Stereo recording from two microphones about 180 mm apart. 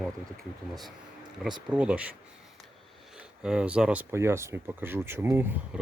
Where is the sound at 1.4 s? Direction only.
Centre (ahead or behind).